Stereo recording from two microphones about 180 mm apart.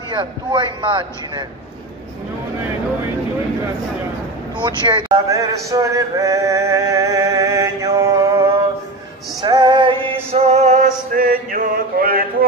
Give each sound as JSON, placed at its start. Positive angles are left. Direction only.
{"t": 0.1, "sound": "a man's voice", "side_deg": -25}
{"t": 4.6, "sound": "speech", "side_deg": -25}
{"t": 9.4, "sound": "music", "side_deg": -25}